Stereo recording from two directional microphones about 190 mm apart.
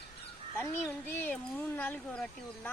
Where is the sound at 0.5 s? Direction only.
10° left (ahead or behind).